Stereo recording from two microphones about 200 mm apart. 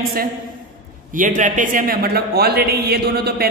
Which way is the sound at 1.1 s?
40° right (ahead or behind).